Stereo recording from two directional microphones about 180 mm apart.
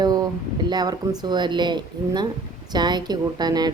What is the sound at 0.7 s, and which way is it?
Speech, 20° right (ahead or behind).